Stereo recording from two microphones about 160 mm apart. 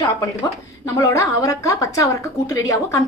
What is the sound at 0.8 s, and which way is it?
A woman's voice, 20° left (ahead or behind).